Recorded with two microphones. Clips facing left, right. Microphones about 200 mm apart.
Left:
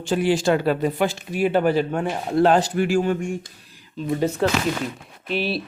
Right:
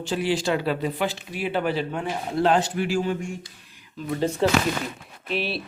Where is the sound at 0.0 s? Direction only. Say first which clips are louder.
Left 5 dB; 50° left (ahead or behind).